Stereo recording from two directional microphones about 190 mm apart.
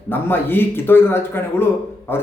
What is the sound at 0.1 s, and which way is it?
A man's voice, 10° left (ahead or behind).